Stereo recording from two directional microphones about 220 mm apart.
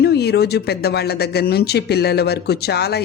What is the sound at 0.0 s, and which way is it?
Speech, 45° left (ahead or behind).